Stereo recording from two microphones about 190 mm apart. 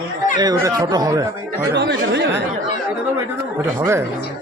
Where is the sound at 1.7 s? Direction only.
65° right (ahead or behind).